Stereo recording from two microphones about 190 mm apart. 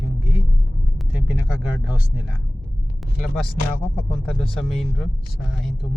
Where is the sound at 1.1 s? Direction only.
5° right (ahead or behind).